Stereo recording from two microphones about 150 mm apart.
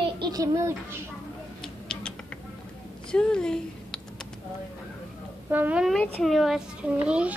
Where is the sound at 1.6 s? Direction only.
5° left (ahead or behind).